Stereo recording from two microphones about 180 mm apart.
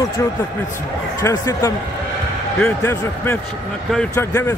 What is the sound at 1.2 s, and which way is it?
Speech, 20° left (ahead or behind).